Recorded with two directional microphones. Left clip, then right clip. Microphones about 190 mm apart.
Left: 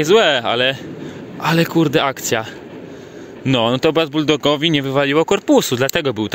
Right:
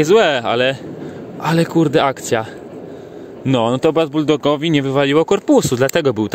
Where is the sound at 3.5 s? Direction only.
10° right (ahead or behind).